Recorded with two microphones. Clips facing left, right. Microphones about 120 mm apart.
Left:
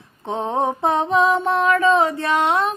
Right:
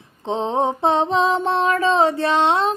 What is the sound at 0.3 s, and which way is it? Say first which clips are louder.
Mantra: right 1 dB; 20° right (ahead or behind).